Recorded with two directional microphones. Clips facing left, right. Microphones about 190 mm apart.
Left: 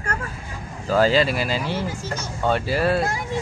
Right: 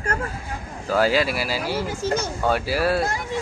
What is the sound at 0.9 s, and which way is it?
Speech, 10° right (ahead or behind).